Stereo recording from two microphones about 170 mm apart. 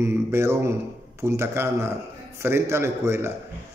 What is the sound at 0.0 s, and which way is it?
Mantra, 15° right (ahead or behind).